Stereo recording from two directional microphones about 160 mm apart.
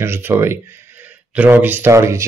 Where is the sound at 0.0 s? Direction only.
15° right (ahead or behind).